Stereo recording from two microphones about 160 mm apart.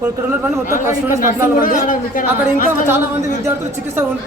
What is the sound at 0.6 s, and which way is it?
A man's voice, 55° left (ahead or behind).